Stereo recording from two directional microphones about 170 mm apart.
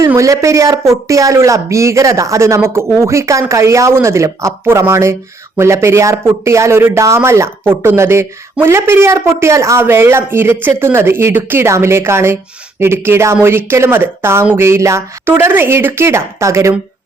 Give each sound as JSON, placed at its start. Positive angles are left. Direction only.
{"t": 0.0, "sound": "speech", "side_deg": -20}